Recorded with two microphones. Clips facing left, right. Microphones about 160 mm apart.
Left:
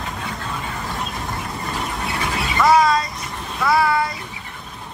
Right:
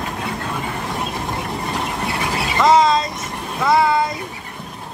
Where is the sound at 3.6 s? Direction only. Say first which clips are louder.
Right 2 dB; 20° right (ahead or behind).